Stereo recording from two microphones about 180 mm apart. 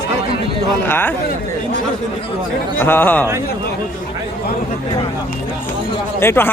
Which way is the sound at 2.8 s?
10° left (ahead or behind).